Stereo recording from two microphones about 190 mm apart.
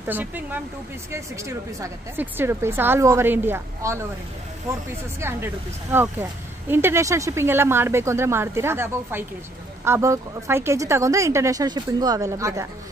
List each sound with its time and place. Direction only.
0.0 s a woman's voice: 10° right (ahead or behind)
5.2 s a woman's voice: 15° right (ahead or behind)